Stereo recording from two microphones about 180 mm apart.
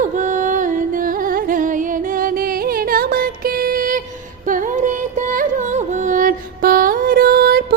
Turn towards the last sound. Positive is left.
turn(degrees=-55)  # may be behind; listen again after turning